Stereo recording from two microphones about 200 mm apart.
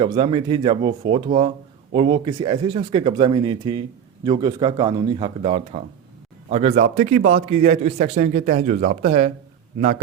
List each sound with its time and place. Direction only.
0.0 s a man's voice: 25° right (ahead or behind)